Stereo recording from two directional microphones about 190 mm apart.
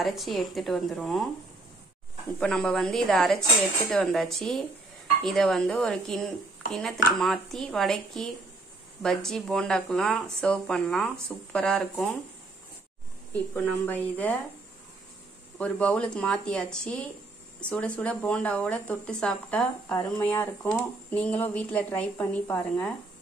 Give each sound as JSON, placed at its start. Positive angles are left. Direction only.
{"t": 0.0, "sound": "speech", "side_deg": 0}
{"t": 2.4, "sound": "speech", "side_deg": 5}
{"t": 13.3, "sound": "speech", "side_deg": 5}
{"t": 15.5, "sound": "speech", "side_deg": 5}